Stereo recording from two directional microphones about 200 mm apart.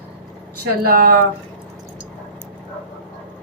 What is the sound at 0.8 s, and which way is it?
Speech, 45° right (ahead or behind).